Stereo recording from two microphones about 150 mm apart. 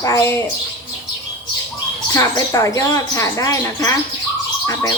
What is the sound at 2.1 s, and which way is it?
Speech, 20° left (ahead or behind).